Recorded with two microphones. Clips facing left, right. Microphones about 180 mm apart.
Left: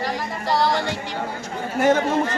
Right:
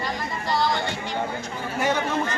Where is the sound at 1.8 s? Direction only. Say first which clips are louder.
Left 6 dB; 45° left (ahead or behind).